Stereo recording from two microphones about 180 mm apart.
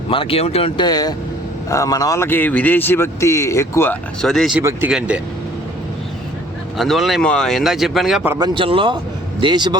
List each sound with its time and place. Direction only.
0.1 s speech: 30° left (ahead or behind); by 3.9 s 15° left (ahead or behind)
4.2 s speech: centre (ahead or behind)
6.7 s speech: centre (ahead or behind)
8.3 s speech: 25° right (ahead or behind)